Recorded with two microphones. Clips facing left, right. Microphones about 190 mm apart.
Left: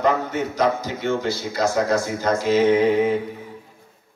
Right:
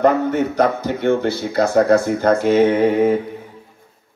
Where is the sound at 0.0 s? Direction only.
55° right (ahead or behind).